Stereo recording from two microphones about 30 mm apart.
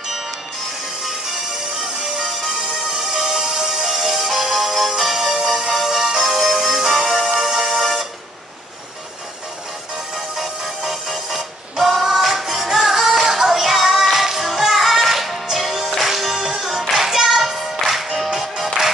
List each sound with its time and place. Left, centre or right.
3.1 s music: right
10.8 s music: centre